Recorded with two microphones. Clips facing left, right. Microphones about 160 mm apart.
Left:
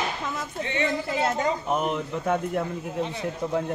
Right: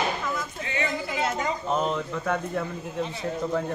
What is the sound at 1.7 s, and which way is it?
A man's voice, 10° left (ahead or behind).